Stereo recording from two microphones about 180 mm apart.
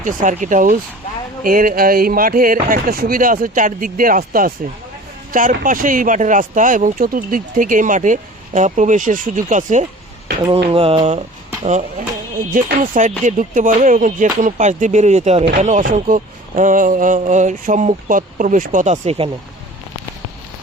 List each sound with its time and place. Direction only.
0.0 s speech: 45° right (ahead or behind)
10.7 s mantra: 30° right (ahead or behind)
12.6 s speech: 50° right (ahead or behind); by 19.3 s 35° right (ahead or behind)